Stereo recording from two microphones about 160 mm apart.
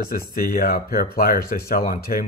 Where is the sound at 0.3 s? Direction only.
60° left (ahead or behind).